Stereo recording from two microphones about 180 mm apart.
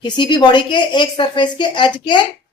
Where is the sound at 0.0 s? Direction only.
25° left (ahead or behind).